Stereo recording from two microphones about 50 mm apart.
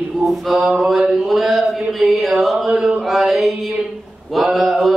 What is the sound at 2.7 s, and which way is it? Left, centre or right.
Mantra, centre.